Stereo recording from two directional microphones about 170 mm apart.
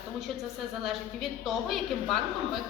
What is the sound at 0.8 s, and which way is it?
A woman's voice, centre (ahead or behind).